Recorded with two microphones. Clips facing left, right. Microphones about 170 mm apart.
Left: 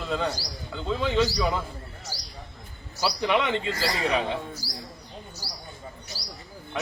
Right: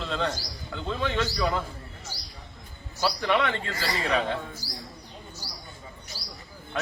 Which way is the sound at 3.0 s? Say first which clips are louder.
Even; 15° left (ahead or behind).